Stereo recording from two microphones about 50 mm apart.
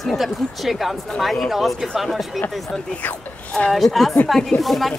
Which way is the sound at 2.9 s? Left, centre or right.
Left.